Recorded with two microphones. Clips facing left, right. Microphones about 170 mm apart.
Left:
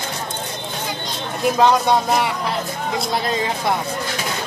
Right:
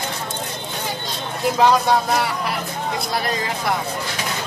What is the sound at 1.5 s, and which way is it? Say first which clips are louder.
Speech: even; 15° left (ahead or behind).